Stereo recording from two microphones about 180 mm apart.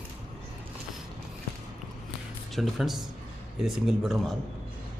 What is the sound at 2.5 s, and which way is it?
A man's voice, centre (ahead or behind).